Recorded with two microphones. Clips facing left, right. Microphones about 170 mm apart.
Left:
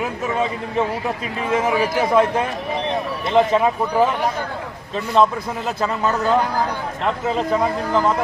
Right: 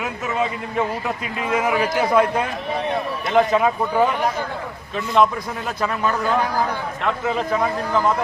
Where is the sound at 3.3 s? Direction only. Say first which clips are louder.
Left 1 dB; 25° left (ahead or behind).